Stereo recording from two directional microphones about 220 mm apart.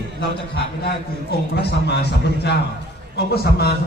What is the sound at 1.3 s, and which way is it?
A man's voice, 45° left (ahead or behind).